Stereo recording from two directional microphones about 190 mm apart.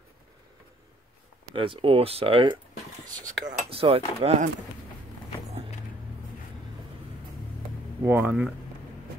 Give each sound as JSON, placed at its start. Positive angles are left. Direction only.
{"t": 1.5, "sound": "speech", "side_deg": -25}
{"t": 8.0, "sound": "speech", "side_deg": -10}